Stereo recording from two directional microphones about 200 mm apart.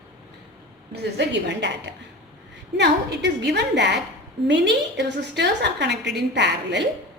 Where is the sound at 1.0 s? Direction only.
60° right (ahead or behind).